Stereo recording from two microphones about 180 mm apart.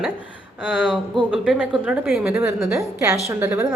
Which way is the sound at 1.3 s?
5° right (ahead or behind).